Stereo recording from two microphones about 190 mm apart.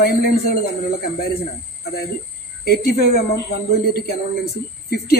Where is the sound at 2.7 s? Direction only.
55° left (ahead or behind).